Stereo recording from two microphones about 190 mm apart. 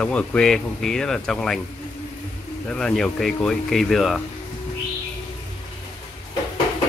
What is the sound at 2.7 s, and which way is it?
Speech, 5° left (ahead or behind).